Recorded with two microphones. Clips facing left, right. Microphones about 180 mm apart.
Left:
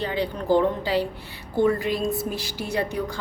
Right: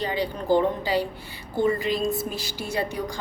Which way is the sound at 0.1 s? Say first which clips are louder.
Left 1 dB; centre (ahead or behind).